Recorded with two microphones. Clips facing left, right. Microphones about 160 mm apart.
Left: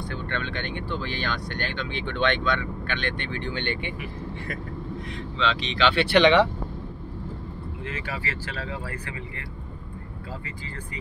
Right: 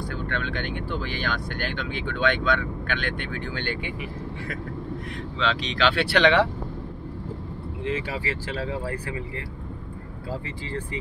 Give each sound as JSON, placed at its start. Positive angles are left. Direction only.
{"t": 0.1, "sound": "speech", "side_deg": -5}
{"t": 5.4, "sound": "speech", "side_deg": -5}
{"t": 8.5, "sound": "speech", "side_deg": -30}